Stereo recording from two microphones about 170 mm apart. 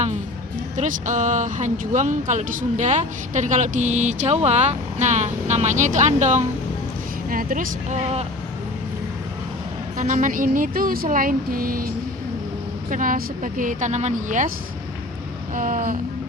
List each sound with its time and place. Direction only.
0.8 s speech: 45° right (ahead or behind)
7.3 s speech: 55° right (ahead or behind)
10.0 s speech: 45° right (ahead or behind)
12.9 s speech: 50° right (ahead or behind)
15.5 s speech: 50° right (ahead or behind)